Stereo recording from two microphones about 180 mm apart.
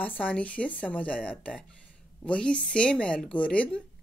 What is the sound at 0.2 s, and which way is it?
A woman's voice, 10° left (ahead or behind).